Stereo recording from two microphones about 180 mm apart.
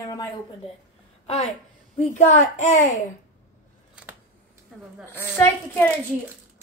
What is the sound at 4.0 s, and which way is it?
Scissors, 5° right (ahead or behind).